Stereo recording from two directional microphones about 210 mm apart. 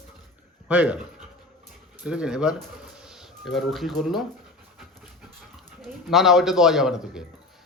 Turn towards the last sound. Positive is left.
turn(degrees=-5)  # may be behind; listen again after turning